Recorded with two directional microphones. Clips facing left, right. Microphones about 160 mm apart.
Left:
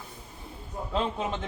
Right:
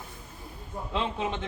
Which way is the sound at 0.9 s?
40° left (ahead or behind).